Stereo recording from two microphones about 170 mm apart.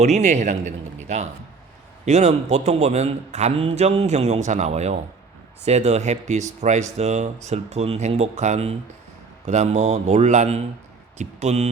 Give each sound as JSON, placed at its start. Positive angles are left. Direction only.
{"t": 0.0, "sound": "a man's voice", "side_deg": -40}